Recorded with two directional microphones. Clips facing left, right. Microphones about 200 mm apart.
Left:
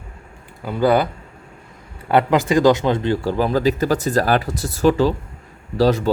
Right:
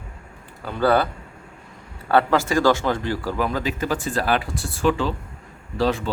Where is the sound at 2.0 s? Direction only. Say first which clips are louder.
Left 3 dB; 20° left (ahead or behind).